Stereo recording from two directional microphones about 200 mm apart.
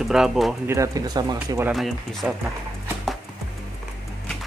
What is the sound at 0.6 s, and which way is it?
Speech, 15° right (ahead or behind).